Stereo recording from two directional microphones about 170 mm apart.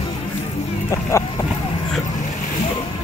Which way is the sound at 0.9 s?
15° left (ahead or behind).